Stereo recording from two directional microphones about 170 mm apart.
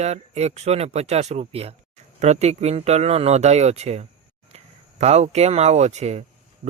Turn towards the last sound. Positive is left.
turn(degrees=-40)  # may be behind; listen again after turning